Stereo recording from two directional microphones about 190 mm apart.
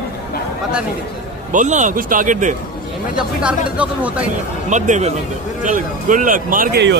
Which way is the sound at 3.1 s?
5° right (ahead or behind).